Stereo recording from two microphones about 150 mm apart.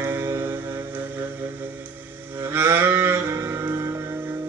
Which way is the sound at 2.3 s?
15° right (ahead or behind).